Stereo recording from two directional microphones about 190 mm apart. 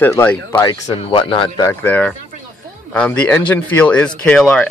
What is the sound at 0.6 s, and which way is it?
Speech, 25° left (ahead or behind).